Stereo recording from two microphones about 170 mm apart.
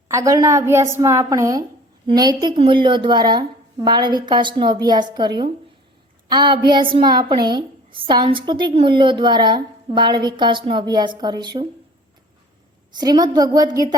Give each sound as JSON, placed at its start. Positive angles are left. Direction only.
{"t": 0.1, "sound": "a woman's voice", "side_deg": -20}
{"t": 12.9, "sound": "a woman's voice", "side_deg": -25}